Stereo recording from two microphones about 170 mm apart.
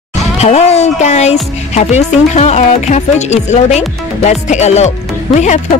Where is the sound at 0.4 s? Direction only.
40° left (ahead or behind).